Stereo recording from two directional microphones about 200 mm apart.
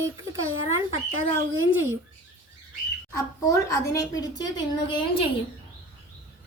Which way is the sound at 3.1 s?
15° left (ahead or behind).